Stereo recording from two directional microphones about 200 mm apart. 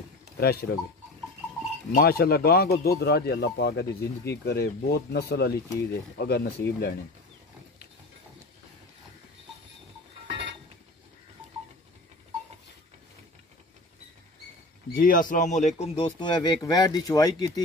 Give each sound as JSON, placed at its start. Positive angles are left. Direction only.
{"t": 0.4, "sound": "speech", "side_deg": 50}
{"t": 2.0, "sound": "speech", "side_deg": 50}
{"t": 10.2, "sound": "pulleys", "side_deg": -65}
{"t": 14.9, "sound": "speech", "side_deg": 45}